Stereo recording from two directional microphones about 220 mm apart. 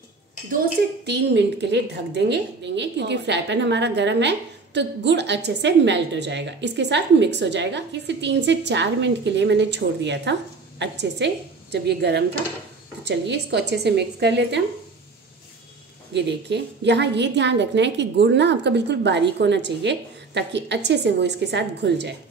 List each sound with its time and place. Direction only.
0.5 s a woman's voice: 50° right (ahead or behind)
16.1 s a woman's voice: 50° right (ahead or behind)